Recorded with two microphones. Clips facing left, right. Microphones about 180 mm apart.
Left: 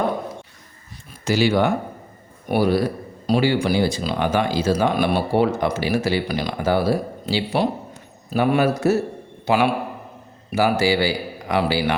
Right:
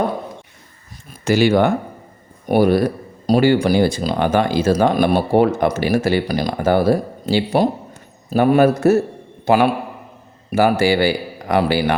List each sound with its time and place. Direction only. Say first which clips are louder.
1.2 s speech: right 4 dB; 55° right (ahead or behind)
10.5 s speech: right 3 dB; 55° right (ahead or behind)